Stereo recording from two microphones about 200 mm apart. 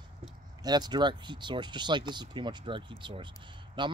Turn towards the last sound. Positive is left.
turn(degrees=-25)  # may be behind; listen again after turning